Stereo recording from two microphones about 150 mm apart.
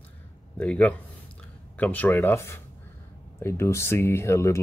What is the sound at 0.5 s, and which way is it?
Speech, 10° left (ahead or behind).